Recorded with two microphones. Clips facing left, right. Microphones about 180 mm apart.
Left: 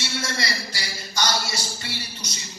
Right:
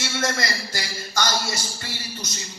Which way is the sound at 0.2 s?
50° right (ahead or behind).